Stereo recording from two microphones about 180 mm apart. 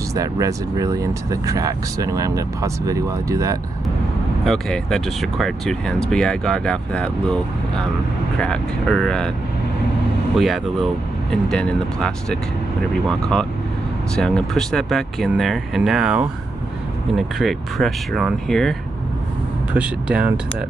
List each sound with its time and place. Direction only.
0.1 s speech: 20° right (ahead or behind)
4.5 s speech: centre (ahead or behind)
10.3 s speech: centre (ahead or behind)